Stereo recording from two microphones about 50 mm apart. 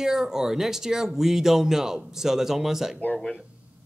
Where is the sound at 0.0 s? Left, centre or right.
Centre.